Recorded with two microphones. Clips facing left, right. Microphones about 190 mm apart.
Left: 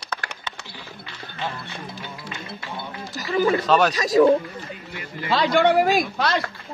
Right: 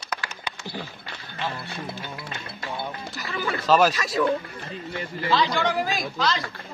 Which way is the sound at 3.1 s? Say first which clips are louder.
Left 11 dB; 40° left (ahead or behind).